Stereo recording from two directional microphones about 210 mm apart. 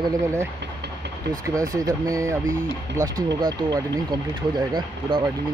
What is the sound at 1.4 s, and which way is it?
Speech, 15° right (ahead or behind).